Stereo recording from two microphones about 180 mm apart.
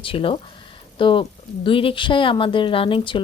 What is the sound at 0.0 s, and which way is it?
Speech, 30° left (ahead or behind).